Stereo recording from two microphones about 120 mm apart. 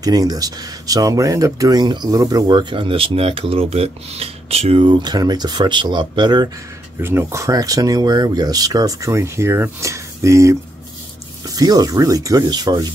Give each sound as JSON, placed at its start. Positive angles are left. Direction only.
{"t": 0.0, "sound": "speech", "side_deg": -30}
{"t": 2.4, "sound": "speech", "side_deg": -40}
{"t": 7.0, "sound": "speech", "side_deg": -20}